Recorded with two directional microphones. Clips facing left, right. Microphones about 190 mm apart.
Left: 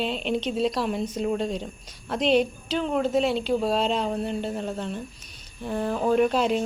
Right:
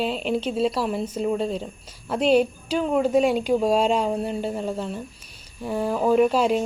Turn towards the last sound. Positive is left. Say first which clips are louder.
# right 3 dB
turn(degrees=-5)  # may be behind; listen again after turning